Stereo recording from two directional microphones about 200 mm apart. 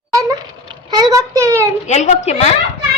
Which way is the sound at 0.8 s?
20° right (ahead or behind).